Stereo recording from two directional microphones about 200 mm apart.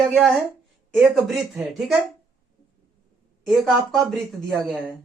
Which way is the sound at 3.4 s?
Centre (ahead or behind).